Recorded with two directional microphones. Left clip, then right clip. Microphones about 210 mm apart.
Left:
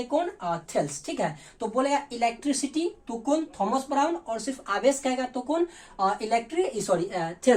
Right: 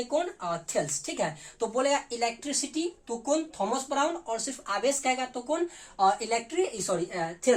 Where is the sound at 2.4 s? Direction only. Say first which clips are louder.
Left 4 dB; 15° right (ahead or behind).